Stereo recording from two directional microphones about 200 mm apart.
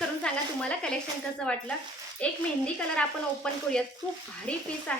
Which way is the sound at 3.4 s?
5° left (ahead or behind).